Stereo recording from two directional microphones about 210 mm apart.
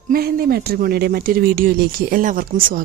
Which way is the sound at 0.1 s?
45° right (ahead or behind).